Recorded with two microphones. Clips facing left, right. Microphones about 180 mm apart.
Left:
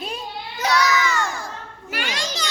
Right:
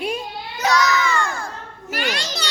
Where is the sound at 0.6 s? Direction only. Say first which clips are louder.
Right 1 dB; 40° right (ahead or behind).